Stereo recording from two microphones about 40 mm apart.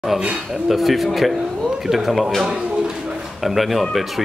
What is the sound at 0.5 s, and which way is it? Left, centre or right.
Speech, centre.